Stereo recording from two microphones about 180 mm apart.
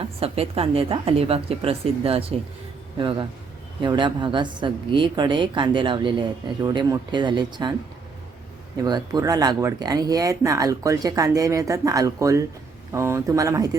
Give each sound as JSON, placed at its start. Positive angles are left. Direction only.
{"t": 0.0, "sound": "a woman's voice", "side_deg": -35}
{"t": 8.8, "sound": "a woman's voice", "side_deg": -20}